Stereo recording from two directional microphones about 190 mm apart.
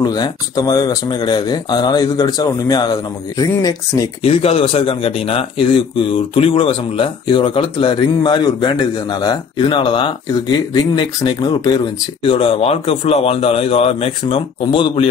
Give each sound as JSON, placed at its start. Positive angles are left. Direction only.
{"t": 0.0, "sound": "speech", "side_deg": 20}
{"t": 4.2, "sound": "speech", "side_deg": 30}